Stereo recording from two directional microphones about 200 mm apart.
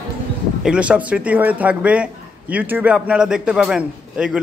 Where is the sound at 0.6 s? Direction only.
5° right (ahead or behind).